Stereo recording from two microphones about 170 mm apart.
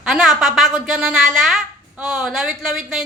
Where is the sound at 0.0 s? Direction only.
5° right (ahead or behind).